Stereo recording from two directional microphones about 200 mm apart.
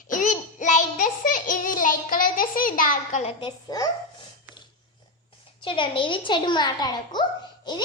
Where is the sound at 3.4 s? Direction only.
20° left (ahead or behind).